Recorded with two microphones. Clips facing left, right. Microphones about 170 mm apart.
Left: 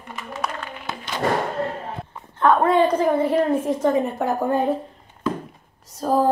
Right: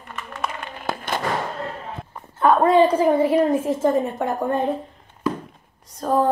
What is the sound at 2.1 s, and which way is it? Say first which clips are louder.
A woman's voice: right 1 dB; 5° right (ahead or behind).